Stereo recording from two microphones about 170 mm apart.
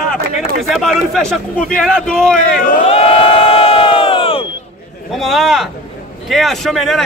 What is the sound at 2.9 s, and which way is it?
Crowd, 35° left (ahead or behind).